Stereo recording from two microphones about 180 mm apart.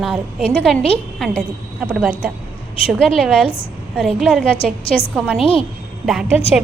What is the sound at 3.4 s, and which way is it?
Speech, 30° left (ahead or behind).